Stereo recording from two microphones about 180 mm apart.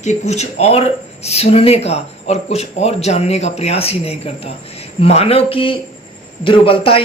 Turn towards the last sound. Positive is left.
turn(degrees=30)  # may be behind; listen again after turning